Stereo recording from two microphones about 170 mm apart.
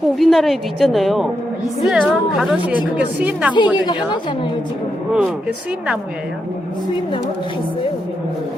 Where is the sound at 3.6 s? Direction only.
25° left (ahead or behind).